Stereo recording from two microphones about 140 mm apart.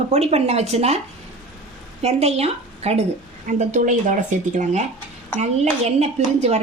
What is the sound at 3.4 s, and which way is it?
Speech, 65° right (ahead or behind).